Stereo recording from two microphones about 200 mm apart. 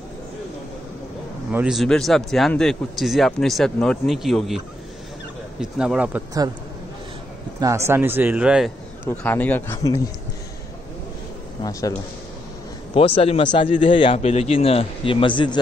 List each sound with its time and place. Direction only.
1.5 s a man's voice: 5° right (ahead or behind)
7.6 s speech: 15° right (ahead or behind)
9.0 s speech: 10° left (ahead or behind)
12.9 s a man's voice: 30° left (ahead or behind)